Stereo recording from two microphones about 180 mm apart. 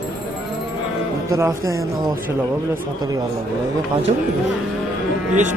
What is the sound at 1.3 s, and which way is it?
Speech, 15° right (ahead or behind).